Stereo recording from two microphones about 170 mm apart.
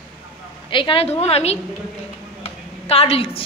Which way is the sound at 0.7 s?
30° left (ahead or behind).